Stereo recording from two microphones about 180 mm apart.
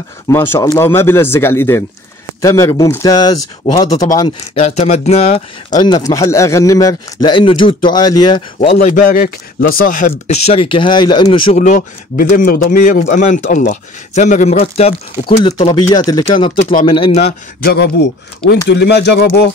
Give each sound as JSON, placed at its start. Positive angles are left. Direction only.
{"t": 0.3, "sound": "a man's voice", "side_deg": 15}
{"t": 4.6, "sound": "speech", "side_deg": 35}
{"t": 5.7, "sound": "speech", "side_deg": 20}
{"t": 8.8, "sound": "speech", "side_deg": 50}
{"t": 11.5, "sound": "a man's voice", "side_deg": 45}
{"t": 17.6, "sound": "speech", "side_deg": 70}